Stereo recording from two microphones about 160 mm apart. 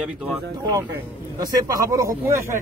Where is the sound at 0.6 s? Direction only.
25° right (ahead or behind).